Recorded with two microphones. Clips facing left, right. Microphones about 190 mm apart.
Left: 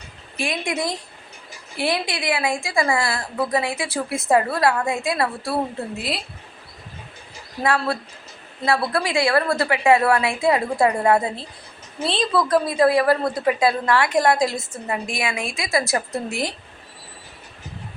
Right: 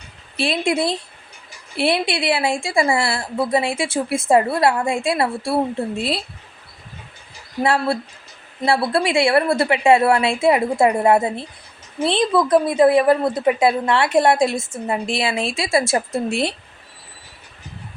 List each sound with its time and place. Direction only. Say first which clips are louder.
0.3 s speech: right 5 dB; 30° right (ahead or behind)
7.6 s speech: right 3 dB; 30° right (ahead or behind)